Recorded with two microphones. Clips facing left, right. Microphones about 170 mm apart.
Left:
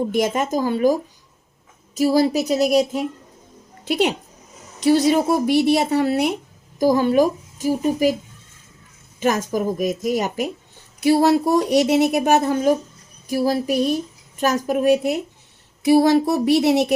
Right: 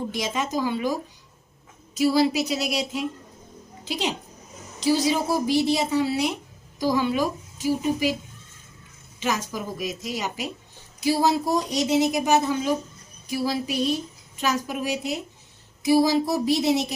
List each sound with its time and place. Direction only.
0.1 s a woman's voice: 55° left (ahead or behind)
2.0 s a woman's voice: 45° left (ahead or behind)
9.2 s a woman's voice: 50° left (ahead or behind)
11.0 s a woman's voice: 65° left (ahead or behind)